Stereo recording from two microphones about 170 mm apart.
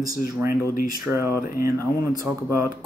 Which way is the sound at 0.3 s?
15° right (ahead or behind).